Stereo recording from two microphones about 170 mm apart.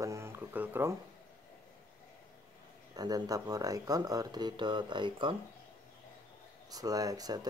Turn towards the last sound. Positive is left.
turn(degrees=-20)  # may be behind; listen again after turning